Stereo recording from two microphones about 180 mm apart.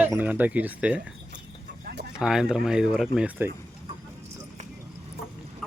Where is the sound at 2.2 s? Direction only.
5° right (ahead or behind).